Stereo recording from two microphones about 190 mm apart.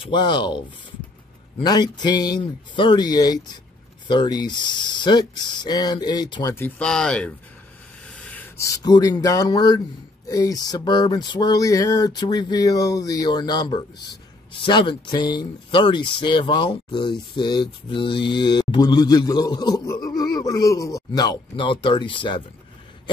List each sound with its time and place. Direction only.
0.0 s speech: 25° left (ahead or behind)